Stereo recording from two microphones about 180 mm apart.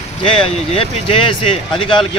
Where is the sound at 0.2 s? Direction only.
30° left (ahead or behind).